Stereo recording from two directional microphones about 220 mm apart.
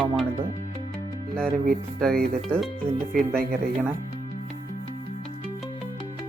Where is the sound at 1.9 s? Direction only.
Centre (ahead or behind).